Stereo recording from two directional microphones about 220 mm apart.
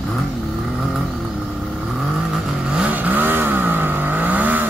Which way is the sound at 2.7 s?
5° right (ahead or behind).